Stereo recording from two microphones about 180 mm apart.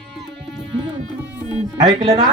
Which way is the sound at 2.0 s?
20° right (ahead or behind).